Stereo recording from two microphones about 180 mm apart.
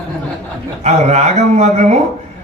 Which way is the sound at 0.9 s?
35° right (ahead or behind).